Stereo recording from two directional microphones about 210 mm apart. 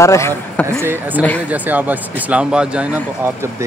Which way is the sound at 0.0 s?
15° left (ahead or behind).